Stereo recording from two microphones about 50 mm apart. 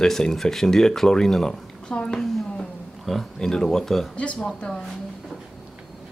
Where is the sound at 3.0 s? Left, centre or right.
Centre.